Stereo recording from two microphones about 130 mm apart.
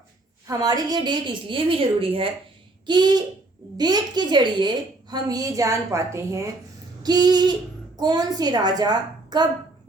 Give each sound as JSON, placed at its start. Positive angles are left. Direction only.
{"t": 0.4, "sound": "a woman's voice", "side_deg": -30}
{"t": 7.0, "sound": "a woman's voice", "side_deg": -30}